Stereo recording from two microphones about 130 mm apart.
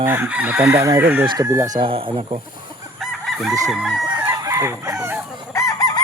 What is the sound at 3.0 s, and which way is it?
Chicken, centre (ahead or behind).